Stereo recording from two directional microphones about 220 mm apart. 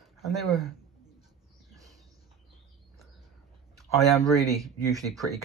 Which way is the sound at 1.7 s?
15° right (ahead or behind).